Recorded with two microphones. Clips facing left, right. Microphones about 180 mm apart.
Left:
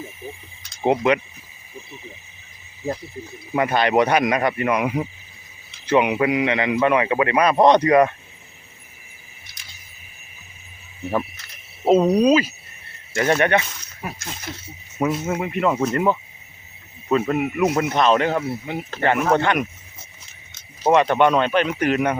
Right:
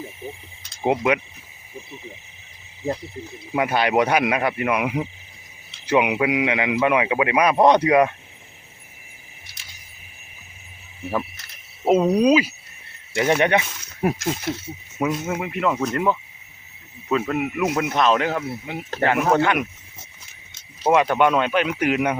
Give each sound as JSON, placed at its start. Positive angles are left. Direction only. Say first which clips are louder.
{"t": 0.8, "sound": "speech", "louder": "left 2 dB", "side_deg": -5}
{"t": 3.5, "sound": "speech", "louder": "left 1 dB", "side_deg": -10}
{"t": 11.9, "sound": "cricket", "louder": "left 2 dB", "side_deg": -5}
{"t": 12.2, "sound": "speech", "louder": "even", "side_deg": -10}
{"t": 14.0, "sound": "speech", "louder": "right 11 dB", "side_deg": -55}
{"t": 14.9, "sound": "speech", "louder": "left 2 dB", "side_deg": 0}
{"t": 20.8, "sound": "speech", "louder": "left 1 dB", "side_deg": -5}